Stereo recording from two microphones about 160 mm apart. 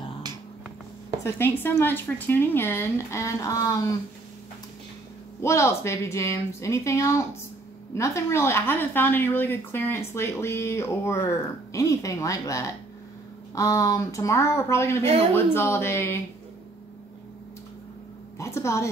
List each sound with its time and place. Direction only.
1.2 s speech: 15° left (ahead or behind)
5.4 s speech: 15° left (ahead or behind)
18.4 s speech: 15° left (ahead or behind)